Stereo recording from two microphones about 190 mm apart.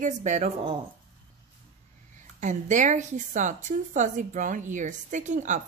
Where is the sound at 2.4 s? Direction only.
40° right (ahead or behind).